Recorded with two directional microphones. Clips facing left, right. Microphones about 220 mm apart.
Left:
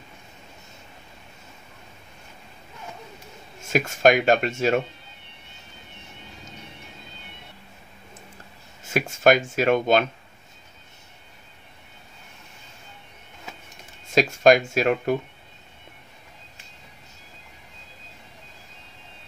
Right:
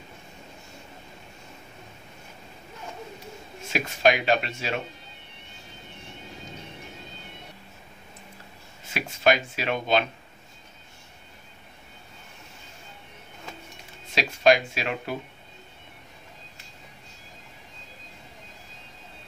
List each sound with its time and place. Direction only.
3.7 s speech: 45° left (ahead or behind)
8.8 s speech: 45° left (ahead or behind)
14.1 s speech: 45° left (ahead or behind)